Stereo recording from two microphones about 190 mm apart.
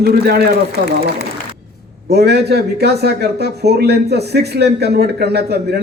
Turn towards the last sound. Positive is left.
turn(degrees=-60)  # may be behind; listen again after turning